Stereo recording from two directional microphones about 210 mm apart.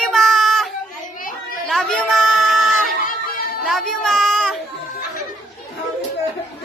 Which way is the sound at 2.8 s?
40° left (ahead or behind).